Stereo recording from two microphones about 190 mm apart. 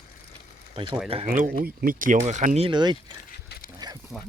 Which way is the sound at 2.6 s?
25° right (ahead or behind).